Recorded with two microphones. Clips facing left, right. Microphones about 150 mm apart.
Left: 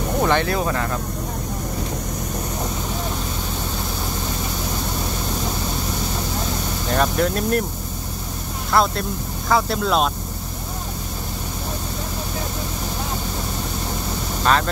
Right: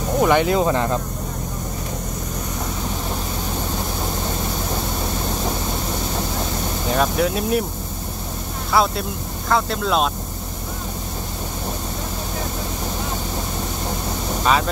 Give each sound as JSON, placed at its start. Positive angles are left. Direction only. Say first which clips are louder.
{"t": 0.2, "sound": "speech", "louder": "right 4 dB", "side_deg": -15}
{"t": 6.9, "sound": "speech", "louder": "even", "side_deg": -5}
{"t": 8.7, "sound": "speech", "louder": "even", "side_deg": -5}